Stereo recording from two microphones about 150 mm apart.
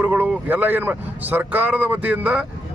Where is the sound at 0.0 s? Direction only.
10° right (ahead or behind).